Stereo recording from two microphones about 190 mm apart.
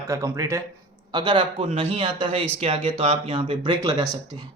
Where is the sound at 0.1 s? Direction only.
15° right (ahead or behind).